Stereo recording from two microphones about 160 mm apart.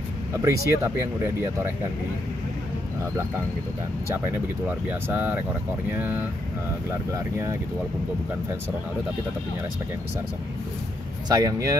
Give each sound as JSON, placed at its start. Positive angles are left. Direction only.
{"t": 0.4, "sound": "speech", "side_deg": -20}
{"t": 4.8, "sound": "speech", "side_deg": -10}
{"t": 11.2, "sound": "speech", "side_deg": -20}